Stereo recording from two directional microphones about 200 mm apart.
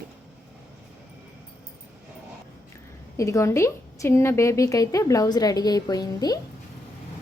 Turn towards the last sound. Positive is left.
turn(degrees=20)  # may be behind; listen again after turning